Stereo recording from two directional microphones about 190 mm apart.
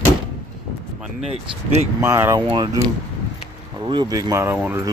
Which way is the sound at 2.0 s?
15° right (ahead or behind).